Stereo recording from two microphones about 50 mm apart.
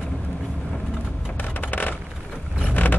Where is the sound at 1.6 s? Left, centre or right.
Left.